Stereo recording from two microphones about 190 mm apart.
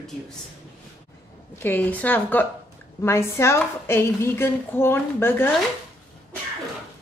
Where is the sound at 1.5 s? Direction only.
10° left (ahead or behind).